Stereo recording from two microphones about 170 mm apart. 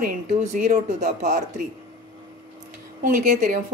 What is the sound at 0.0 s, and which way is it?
Speech, 50° right (ahead or behind).